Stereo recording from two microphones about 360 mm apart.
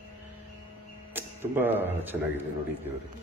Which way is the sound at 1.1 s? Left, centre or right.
Centre.